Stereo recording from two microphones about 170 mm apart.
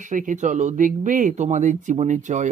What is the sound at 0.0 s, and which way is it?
Speech, 50° right (ahead or behind).